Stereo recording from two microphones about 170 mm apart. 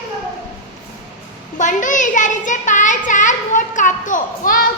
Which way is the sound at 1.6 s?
50° left (ahead or behind).